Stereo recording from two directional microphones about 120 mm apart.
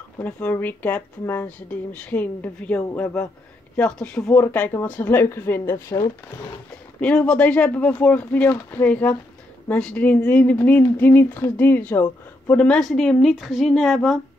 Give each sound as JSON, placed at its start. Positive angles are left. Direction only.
{"t": 0.2, "sound": "a woman's voice", "side_deg": 15}
{"t": 7.0, "sound": "speech", "side_deg": 10}